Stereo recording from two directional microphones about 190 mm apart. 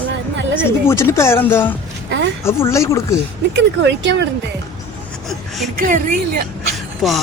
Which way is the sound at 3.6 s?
70° right (ahead or behind).